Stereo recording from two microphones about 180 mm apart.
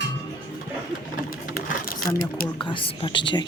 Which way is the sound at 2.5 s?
25° left (ahead or behind).